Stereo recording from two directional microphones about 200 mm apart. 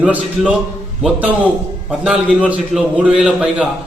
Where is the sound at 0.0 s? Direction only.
5° right (ahead or behind).